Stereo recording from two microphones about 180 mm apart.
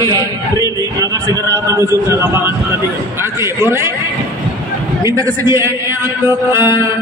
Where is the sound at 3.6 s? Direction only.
15° right (ahead or behind).